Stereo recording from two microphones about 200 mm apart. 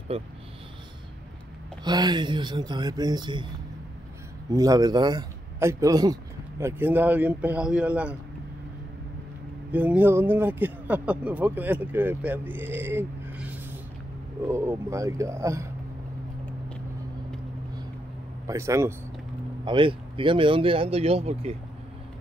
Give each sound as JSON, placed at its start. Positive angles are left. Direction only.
{"t": 0.1, "sound": "speech", "side_deg": -30}
{"t": 1.9, "sound": "speech", "side_deg": -20}
{"t": 4.5, "sound": "speech", "side_deg": -20}
{"t": 9.7, "sound": "speech", "side_deg": -10}
{"t": 18.5, "sound": "speech", "side_deg": -15}
{"t": 19.6, "sound": "speech", "side_deg": -25}